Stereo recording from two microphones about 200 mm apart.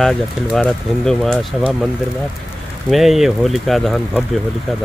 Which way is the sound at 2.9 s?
Centre (ahead or behind).